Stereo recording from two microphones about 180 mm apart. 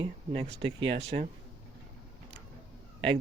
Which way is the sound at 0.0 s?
30° right (ahead or behind).